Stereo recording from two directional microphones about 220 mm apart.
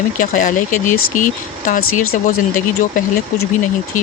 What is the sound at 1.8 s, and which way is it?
Speech, 70° left (ahead or behind).